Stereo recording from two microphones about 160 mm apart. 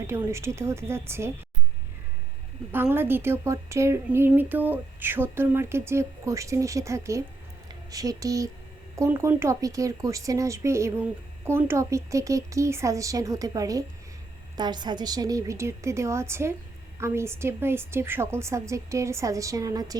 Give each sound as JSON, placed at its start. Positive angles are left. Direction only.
{"t": 0.1, "sound": "a woman's voice", "side_deg": -15}
{"t": 2.7, "sound": "a woman's voice", "side_deg": -15}